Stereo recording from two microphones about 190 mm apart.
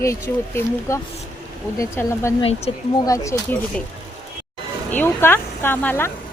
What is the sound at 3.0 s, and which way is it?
Speech, 15° left (ahead or behind).